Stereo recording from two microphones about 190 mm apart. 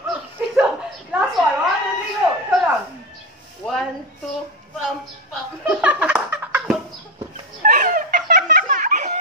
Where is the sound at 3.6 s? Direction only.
Centre (ahead or behind).